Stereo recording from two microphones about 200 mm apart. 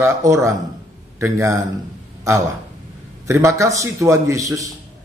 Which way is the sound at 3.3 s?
15° right (ahead or behind).